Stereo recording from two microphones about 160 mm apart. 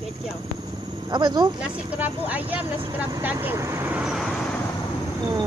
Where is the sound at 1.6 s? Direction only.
10° right (ahead or behind).